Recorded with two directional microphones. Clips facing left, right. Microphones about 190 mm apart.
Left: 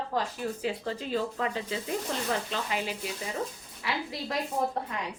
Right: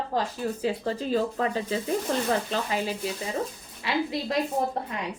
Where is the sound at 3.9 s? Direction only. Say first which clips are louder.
Right 6 dB; 25° right (ahead or behind).